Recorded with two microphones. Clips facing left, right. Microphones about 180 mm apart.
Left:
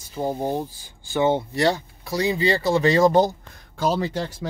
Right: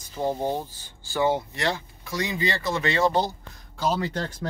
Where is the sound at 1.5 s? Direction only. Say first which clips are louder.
Left 7 dB; 35° left (ahead or behind).